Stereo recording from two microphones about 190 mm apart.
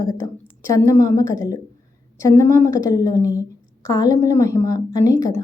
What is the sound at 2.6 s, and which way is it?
A woman's voice, 15° left (ahead or behind).